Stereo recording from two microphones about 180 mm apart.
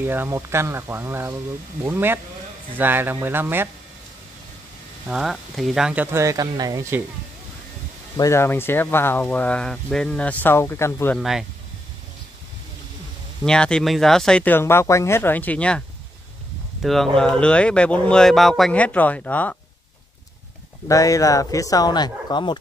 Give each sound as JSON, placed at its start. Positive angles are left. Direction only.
{"t": 0.0, "sound": "speech", "side_deg": -10}
{"t": 5.1, "sound": "speech", "side_deg": 0}
{"t": 8.2, "sound": "speech", "side_deg": 15}
{"t": 11.1, "sound": "speech", "side_deg": 0}
{"t": 13.4, "sound": "speech", "side_deg": 5}
{"t": 16.8, "sound": "speech", "side_deg": 0}
{"t": 20.9, "sound": "speech", "side_deg": 20}